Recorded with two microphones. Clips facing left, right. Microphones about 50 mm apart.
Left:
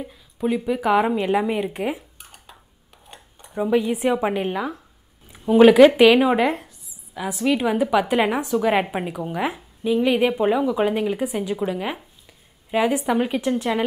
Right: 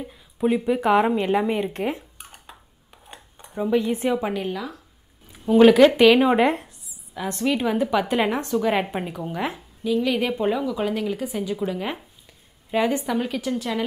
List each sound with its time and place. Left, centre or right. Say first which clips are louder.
0.0 s speech: right 1 dB; centre
2.1 s dishes: right 2 dB; centre
3.4 s a woman's voice: left 2 dB; centre; by 4.8 s left
5.3 s a woman's voice: left 1 dB; centre
9.8 s a woman's voice: left 3 dB; left
13.0 s speech: left 4 dB; centre